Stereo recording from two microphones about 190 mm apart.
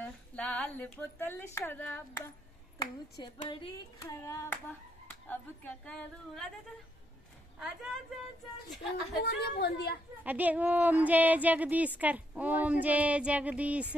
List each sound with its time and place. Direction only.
0.0 s a woman's voice: 5° left (ahead or behind)
2.8 s clapping: 25° left (ahead or behind)
5.3 s a woman's voice: 10° left (ahead or behind)
7.5 s a woman's voice: centre (ahead or behind)
9.2 s speech: 60° left (ahead or behind)
10.2 s speech: 10° right (ahead or behind)